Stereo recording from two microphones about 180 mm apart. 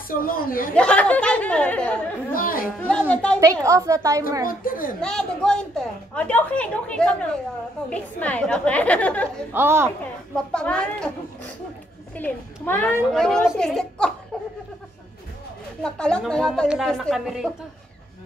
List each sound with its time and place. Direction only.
0.1 s speech: 50° left (ahead or behind)
0.7 s speech: 5° left (ahead or behind)
2.3 s speech: 50° left (ahead or behind)
3.1 s a woman's voice: 5° left (ahead or behind)
3.6 s a woman's voice: 20° right (ahead or behind)
4.5 s speech: 50° left (ahead or behind)
5.0 s a woman's voice: 5° left (ahead or behind)
9.5 s a woman's voice: 10° right (ahead or behind)
10.3 s a woman's voice: 5° left (ahead or behind)
12.2 s a woman's voice: 10° left (ahead or behind)
15.8 s a woman's voice: 5° left (ahead or behind)